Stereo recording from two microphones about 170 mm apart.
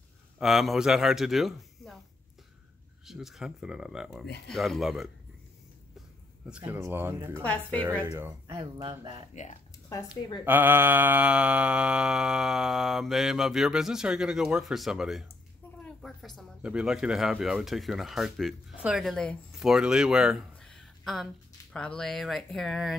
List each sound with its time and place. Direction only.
0.4 s speech: centre (ahead or behind)
3.1 s mantra: centre (ahead or behind)
6.5 s speech: 10° right (ahead or behind)
7.4 s a woman's voice: 10° left (ahead or behind)
8.1 s speech: 15° right (ahead or behind)
8.5 s speech: 30° right (ahead or behind)
9.3 s speech: 45° left (ahead or behind)
10.4 s mantra: 10° right (ahead or behind)
15.8 s speech: centre (ahead or behind)
21.7 s mantra: 5° left (ahead or behind)